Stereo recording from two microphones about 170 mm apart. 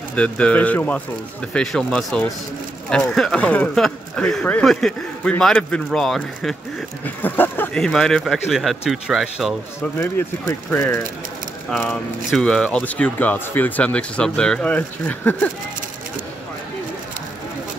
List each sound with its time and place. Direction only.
0.1 s speech: 5° left (ahead or behind)
9.8 s speech: 15° left (ahead or behind)